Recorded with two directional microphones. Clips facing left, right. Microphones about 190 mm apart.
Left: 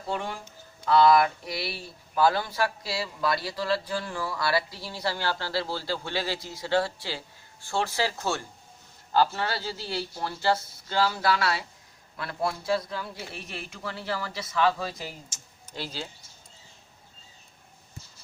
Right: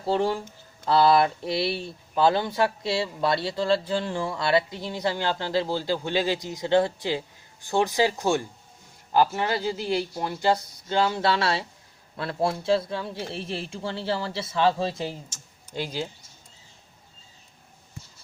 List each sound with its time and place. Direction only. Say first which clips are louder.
0.0 s speech: right 8 dB; 30° right (ahead or behind)
15.7 s speech: right 6 dB; 15° right (ahead or behind)